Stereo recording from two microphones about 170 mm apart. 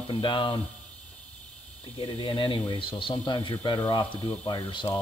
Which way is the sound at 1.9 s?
30° left (ahead or behind).